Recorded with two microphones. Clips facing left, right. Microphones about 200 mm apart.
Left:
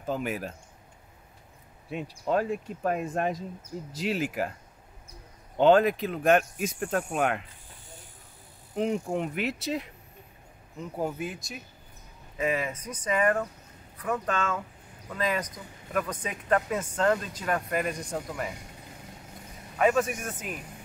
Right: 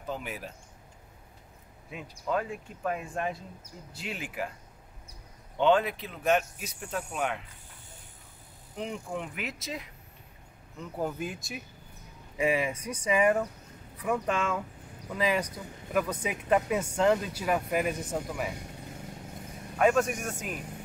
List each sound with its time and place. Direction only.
0.0 s speech: 45° left (ahead or behind)
1.9 s speech: 30° left (ahead or behind)
2.8 s speech: 45° left (ahead or behind)
5.6 s speech: 40° left (ahead or behind); by 7.4 s 60° left (ahead or behind)
8.9 s speech: 35° left (ahead or behind)
11.0 s a man's voice: 5° left (ahead or behind)
19.8 s a man's voice: centre (ahead or behind)